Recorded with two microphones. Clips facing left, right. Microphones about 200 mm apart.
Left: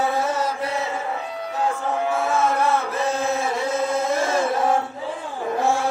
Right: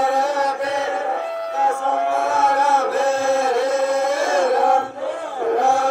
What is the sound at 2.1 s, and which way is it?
Music, 65° right (ahead or behind).